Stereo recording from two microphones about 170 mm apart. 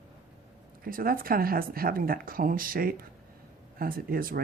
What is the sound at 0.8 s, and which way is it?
Speech, 60° right (ahead or behind).